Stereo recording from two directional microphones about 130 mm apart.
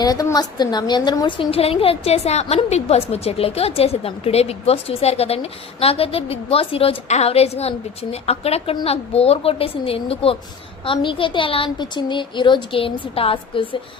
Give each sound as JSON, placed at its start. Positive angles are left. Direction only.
{"t": 0.0, "sound": "a woman's voice", "side_deg": 30}
{"t": 1.5, "sound": "a woman's voice", "side_deg": 50}